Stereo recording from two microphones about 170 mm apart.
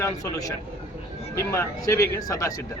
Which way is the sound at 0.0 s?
20° left (ahead or behind).